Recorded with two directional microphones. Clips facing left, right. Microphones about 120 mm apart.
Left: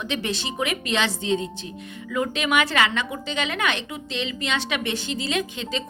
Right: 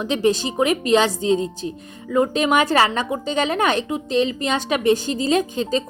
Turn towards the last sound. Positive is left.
turn(degrees=-40)  # may be behind; listen again after turning